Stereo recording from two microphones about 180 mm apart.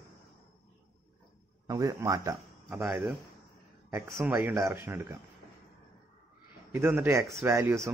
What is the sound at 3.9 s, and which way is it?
Speech, 15° right (ahead or behind).